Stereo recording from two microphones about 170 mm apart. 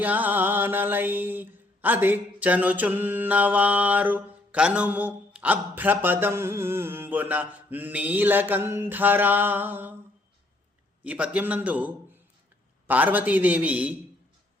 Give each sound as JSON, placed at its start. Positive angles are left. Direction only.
{"t": 0.0, "sound": "mantra", "side_deg": -10}
{"t": 11.0, "sound": "mantra", "side_deg": -5}
{"t": 12.9, "sound": "mantra", "side_deg": -10}